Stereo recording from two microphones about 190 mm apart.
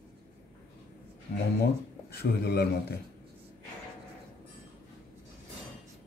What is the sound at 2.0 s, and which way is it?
Speech, 55° left (ahead or behind).